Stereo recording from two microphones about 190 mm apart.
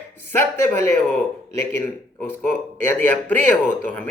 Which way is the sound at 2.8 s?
10° left (ahead or behind).